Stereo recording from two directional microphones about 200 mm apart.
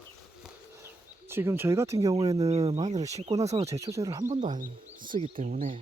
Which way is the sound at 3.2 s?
30° right (ahead or behind).